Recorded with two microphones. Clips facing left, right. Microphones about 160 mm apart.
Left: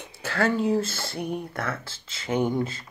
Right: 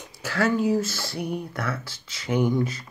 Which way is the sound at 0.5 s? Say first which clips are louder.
Right 2 dB; 30° left (ahead or behind).